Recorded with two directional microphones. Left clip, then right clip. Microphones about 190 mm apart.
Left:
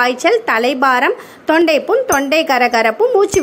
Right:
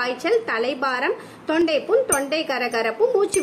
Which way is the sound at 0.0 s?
25° left (ahead or behind).